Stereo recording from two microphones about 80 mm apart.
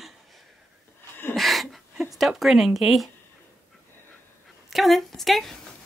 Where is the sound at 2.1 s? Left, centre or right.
Centre.